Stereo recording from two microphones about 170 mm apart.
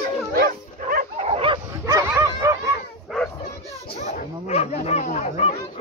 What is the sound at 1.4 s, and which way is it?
Bow-wow, 30° right (ahead or behind).